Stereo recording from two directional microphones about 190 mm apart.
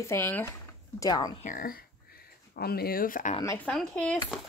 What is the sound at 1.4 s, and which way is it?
Speech, 45° left (ahead or behind).